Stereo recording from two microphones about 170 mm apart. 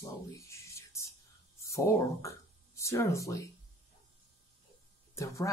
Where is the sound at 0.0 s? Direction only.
15° left (ahead or behind).